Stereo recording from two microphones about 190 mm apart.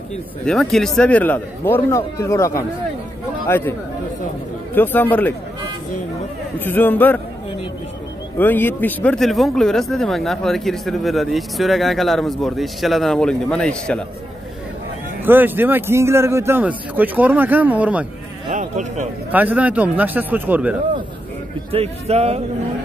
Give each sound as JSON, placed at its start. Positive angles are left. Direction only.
{"t": 0.5, "sound": "a man's voice", "side_deg": 0}
{"t": 4.7, "sound": "a man's voice", "side_deg": 10}
{"t": 6.6, "sound": "a man's voice", "side_deg": 10}
{"t": 8.4, "sound": "speech", "side_deg": 10}
{"t": 15.2, "sound": "a man's voice", "side_deg": -10}
{"t": 18.5, "sound": "a man's voice", "side_deg": -40}
{"t": 19.3, "sound": "a man's voice", "side_deg": -10}
{"t": 21.7, "sound": "speech", "side_deg": -35}